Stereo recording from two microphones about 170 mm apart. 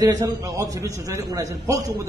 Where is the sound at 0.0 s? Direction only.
20° right (ahead or behind).